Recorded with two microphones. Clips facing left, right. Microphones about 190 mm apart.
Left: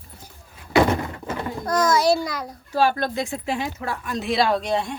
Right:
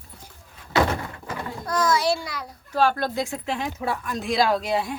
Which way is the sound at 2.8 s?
Centre (ahead or behind).